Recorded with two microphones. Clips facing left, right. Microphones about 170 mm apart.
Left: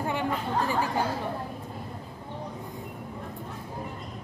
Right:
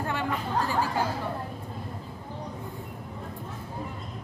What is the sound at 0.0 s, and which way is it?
Chatter, 15° left (ahead or behind).